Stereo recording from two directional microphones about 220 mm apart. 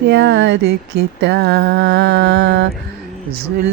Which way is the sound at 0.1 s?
55° right (ahead or behind).